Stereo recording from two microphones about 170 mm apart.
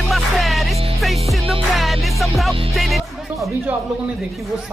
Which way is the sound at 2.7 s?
Centre (ahead or behind).